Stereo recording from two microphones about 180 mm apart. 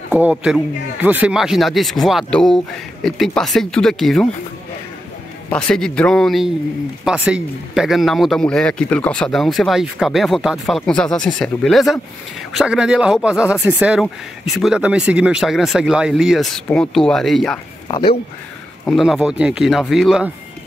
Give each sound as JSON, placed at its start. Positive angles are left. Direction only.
{"t": 0.1, "sound": "speech", "side_deg": -5}
{"t": 5.5, "sound": "speech", "side_deg": 5}
{"t": 17.8, "sound": "speech", "side_deg": 30}
{"t": 18.9, "sound": "speech", "side_deg": 0}